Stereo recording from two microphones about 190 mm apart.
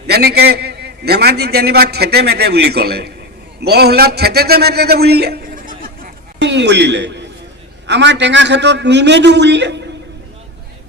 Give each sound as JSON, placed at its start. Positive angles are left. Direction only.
{"t": 0.1, "sound": "a man's voice", "side_deg": -55}